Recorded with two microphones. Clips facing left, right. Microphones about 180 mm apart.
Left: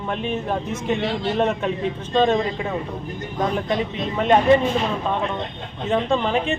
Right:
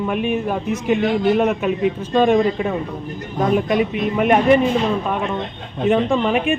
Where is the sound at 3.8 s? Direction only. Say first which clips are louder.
Right 5 dB; 15° right (ahead or behind).